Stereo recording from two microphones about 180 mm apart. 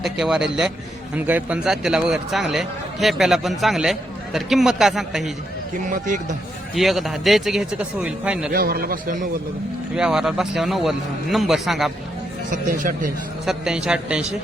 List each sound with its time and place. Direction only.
0.0 s speech: 5° right (ahead or behind)
5.7 s speech: 45° right (ahead or behind)
6.7 s speech: centre (ahead or behind)
8.5 s a man's voice: 55° right (ahead or behind)
9.9 s speech: 5° right (ahead or behind)
12.5 s speech: 45° right (ahead or behind)
13.4 s speech: centre (ahead or behind)